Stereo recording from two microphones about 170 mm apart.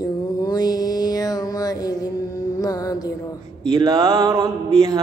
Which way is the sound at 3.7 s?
20° right (ahead or behind).